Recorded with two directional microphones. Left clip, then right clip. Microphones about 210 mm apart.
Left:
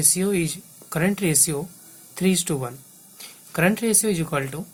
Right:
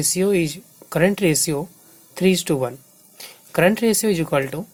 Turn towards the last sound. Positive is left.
turn(degrees=-35)  # may be behind; listen again after turning